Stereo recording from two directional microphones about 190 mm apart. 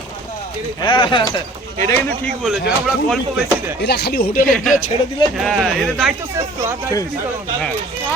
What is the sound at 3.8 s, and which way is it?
Chopping, 60° left (ahead or behind).